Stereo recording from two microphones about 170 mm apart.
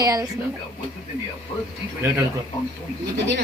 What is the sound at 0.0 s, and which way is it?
Speech, 20° right (ahead or behind).